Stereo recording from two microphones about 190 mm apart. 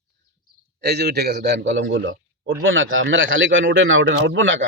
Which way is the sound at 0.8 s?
60° right (ahead or behind).